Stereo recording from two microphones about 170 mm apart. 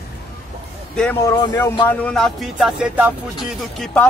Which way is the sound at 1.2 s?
15° left (ahead or behind).